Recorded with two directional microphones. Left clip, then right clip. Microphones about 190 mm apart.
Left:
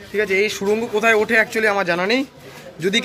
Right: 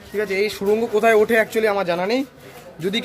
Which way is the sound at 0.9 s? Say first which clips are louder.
Even; 15° right (ahead or behind).